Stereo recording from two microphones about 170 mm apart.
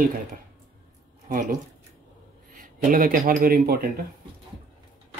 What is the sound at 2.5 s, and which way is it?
A man's voice, 55° right (ahead or behind).